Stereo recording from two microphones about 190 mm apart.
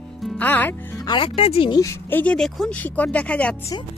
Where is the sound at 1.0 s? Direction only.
25° left (ahead or behind); by 3.5 s 5° left (ahead or behind).